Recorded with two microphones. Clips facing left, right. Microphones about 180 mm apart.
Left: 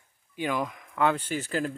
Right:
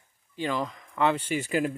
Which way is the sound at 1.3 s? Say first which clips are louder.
Right 3 dB; 10° right (ahead or behind).